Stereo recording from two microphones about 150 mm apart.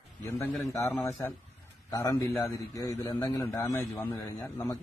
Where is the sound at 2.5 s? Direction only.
20° left (ahead or behind).